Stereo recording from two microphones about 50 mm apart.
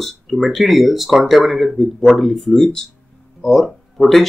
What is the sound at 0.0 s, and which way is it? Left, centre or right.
Speech, centre.